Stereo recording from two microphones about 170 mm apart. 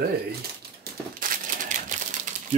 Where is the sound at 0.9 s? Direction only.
70° right (ahead or behind).